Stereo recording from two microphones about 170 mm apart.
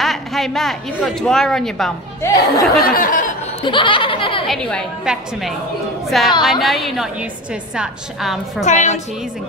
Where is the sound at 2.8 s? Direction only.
55° left (ahead or behind).